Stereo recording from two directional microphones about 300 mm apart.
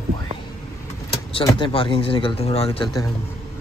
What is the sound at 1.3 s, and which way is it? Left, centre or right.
Speech, centre.